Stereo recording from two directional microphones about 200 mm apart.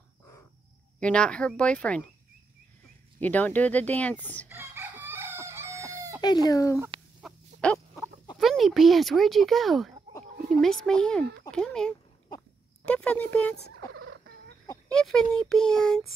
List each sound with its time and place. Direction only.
0.9 s speech: 5° left (ahead or behind)
3.2 s speech: 10° left (ahead or behind)
4.5 s chicken: 10° right (ahead or behind)
6.2 s speech: 20° left (ahead or behind)
7.2 s a sound: centre (ahead or behind)
8.4 s speech: centre (ahead or behind)
13.9 s a sound: 80° right
14.9 s speech: 5° left (ahead or behind)